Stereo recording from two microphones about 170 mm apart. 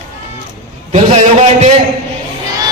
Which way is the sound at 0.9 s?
40° right (ahead or behind).